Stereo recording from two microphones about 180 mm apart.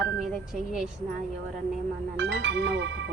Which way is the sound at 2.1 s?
75° right (ahead or behind).